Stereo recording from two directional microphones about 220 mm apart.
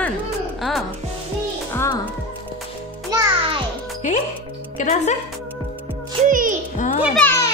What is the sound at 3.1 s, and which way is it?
Music, 15° right (ahead or behind).